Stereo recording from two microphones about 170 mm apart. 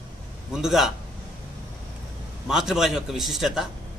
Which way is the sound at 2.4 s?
5° right (ahead or behind).